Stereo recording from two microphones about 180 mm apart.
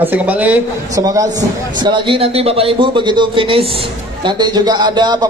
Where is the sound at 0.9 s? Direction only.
20° right (ahead or behind).